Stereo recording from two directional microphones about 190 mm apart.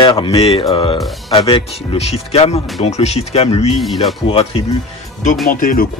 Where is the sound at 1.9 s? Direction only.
30° left (ahead or behind).